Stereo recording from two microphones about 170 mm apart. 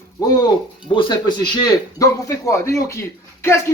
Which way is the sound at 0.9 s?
25° left (ahead or behind).